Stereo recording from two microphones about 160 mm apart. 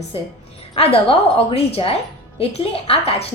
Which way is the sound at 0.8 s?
35° left (ahead or behind).